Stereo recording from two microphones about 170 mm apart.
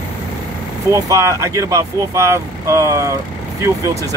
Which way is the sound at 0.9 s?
20° right (ahead or behind).